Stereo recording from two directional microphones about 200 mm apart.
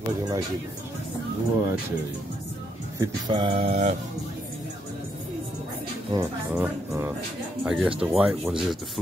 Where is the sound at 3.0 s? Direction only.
20° right (ahead or behind).